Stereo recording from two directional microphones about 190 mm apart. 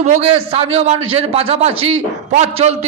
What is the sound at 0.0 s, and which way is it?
A man's voice, 35° right (ahead or behind).